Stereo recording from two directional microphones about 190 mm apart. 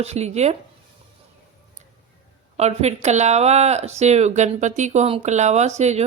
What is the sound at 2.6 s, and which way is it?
Speech, 35° right (ahead or behind).